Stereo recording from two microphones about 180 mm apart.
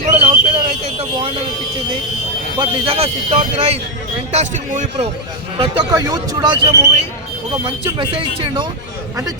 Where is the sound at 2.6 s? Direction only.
30° right (ahead or behind).